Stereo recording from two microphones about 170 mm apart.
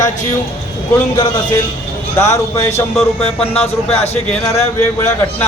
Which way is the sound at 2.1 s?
15° left (ahead or behind).